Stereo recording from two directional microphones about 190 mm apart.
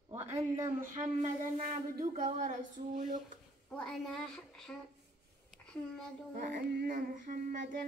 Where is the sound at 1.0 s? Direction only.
40° right (ahead or behind).